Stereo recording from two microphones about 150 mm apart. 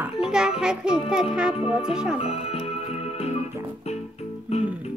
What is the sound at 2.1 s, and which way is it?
Music, 40° left (ahead or behind).